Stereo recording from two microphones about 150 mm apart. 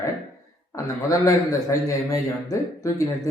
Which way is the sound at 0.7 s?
20° left (ahead or behind).